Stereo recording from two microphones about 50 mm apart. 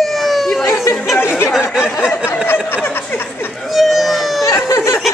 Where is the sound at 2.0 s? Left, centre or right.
Left.